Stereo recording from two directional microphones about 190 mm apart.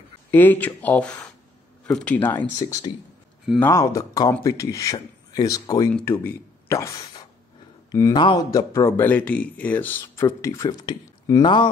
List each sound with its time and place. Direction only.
0.3 s speech: 10° left (ahead or behind)